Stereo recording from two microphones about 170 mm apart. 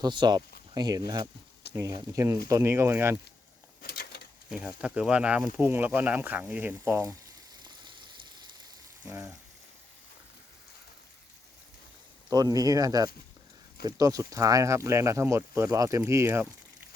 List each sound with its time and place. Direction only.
0.0 s speech: 25° right (ahead or behind)
1.6 s a sound: 75° left (ahead or behind)
2.0 s speech: 20° right (ahead or behind)
3.8 s a sound: 65° left (ahead or behind)
4.5 s speech: 5° right (ahead or behind)
7.6 s rain: 25° right (ahead or behind)
12.3 s speech: 20° right (ahead or behind)